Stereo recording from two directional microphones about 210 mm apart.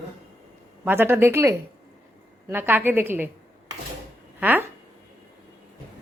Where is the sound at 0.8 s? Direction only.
10° right (ahead or behind).